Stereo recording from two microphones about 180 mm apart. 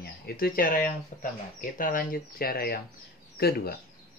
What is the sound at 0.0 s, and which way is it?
Speech, 55° left (ahead or behind).